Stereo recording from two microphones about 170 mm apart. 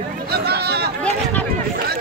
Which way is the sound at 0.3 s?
70° right (ahead or behind).